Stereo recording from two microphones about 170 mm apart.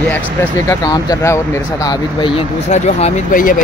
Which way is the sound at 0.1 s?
10° left (ahead or behind).